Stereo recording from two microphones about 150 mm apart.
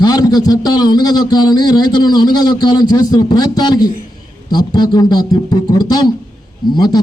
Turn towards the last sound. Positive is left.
turn(degrees=25)  # may be behind; listen again after turning